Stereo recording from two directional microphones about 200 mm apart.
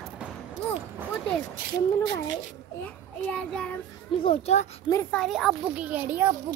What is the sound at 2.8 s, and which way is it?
Speech, 5° left (ahead or behind).